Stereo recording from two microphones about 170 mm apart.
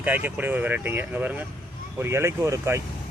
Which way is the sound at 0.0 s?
10° right (ahead or behind).